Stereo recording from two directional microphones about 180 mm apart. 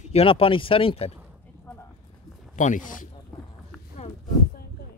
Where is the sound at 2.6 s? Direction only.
45° left (ahead or behind).